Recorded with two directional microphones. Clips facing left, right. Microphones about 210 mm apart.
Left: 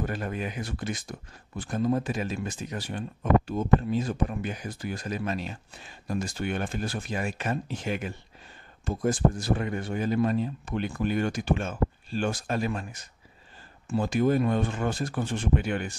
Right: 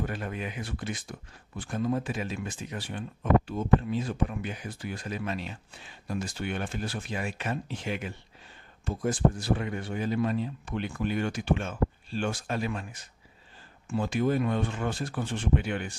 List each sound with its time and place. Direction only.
0.0 s speech: 40° left (ahead or behind)